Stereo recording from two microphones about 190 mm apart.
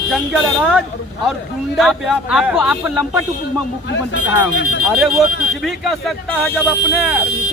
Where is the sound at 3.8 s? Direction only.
70° left (ahead or behind).